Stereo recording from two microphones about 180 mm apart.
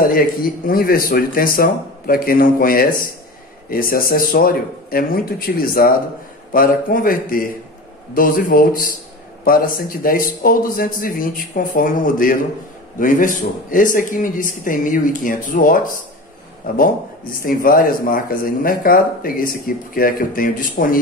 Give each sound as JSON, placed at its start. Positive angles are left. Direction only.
{"t": 0.0, "sound": "speech", "side_deg": 55}